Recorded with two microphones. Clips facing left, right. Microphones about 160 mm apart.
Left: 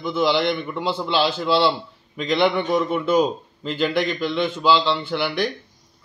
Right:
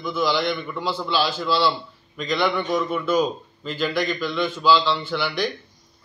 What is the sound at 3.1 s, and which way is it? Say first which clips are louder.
Speech: left 3 dB; 65° left (ahead or behind).